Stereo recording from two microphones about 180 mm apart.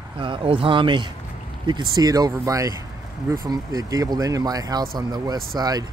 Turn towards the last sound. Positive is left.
turn(degrees=-20)  # may be behind; listen again after turning